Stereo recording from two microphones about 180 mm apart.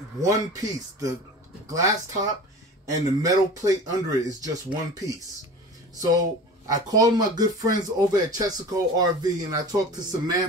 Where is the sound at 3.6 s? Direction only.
20° right (ahead or behind).